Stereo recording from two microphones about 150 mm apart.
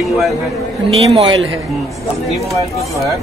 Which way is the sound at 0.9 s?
35° right (ahead or behind).